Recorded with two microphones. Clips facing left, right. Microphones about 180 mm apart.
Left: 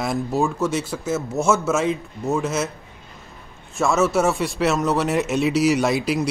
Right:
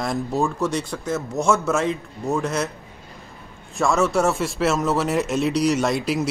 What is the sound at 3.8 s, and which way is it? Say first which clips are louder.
Speech: left 1 dB; centre (ahead or behind).